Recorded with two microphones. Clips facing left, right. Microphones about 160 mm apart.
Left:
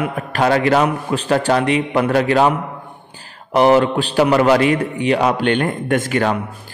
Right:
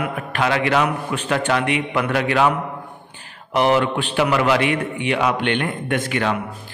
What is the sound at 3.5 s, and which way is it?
A man's voice, 35° left (ahead or behind).